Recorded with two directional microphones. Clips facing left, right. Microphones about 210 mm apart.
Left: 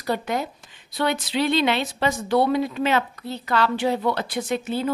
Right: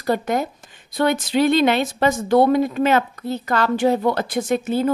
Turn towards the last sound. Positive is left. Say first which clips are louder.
# right 5 dB
turn(degrees=-45)  # may be behind; listen again after turning